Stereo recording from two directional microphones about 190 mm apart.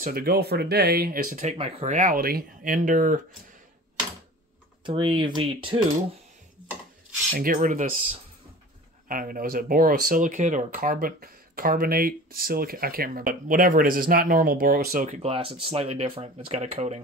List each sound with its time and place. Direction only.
0.0 s speech: 50° right (ahead or behind); by 2.0 s 35° right (ahead or behind)
2.0 s speech: 50° right (ahead or behind)
4.8 s speech: 25° right (ahead or behind)
7.3 s speech: 45° right (ahead or behind)
9.1 s speech: 50° right (ahead or behind)
15.2 s speech: 30° right (ahead or behind)